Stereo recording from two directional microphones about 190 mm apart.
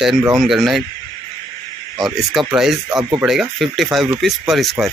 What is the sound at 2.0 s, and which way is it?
Speech, centre (ahead or behind).